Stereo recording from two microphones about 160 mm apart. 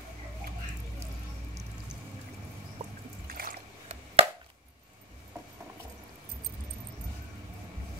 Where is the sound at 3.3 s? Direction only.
65° right (ahead or behind).